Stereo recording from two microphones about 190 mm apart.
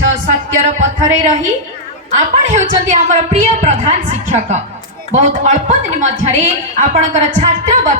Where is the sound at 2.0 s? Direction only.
35° right (ahead or behind).